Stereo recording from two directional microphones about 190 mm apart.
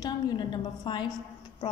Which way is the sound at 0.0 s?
20° left (ahead or behind).